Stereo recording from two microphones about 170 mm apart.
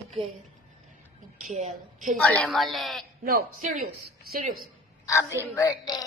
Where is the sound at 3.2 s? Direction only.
60° right (ahead or behind).